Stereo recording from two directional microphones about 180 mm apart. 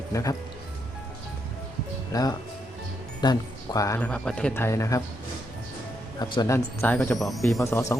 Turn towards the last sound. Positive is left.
turn(degrees=15)  # may be behind; listen again after turning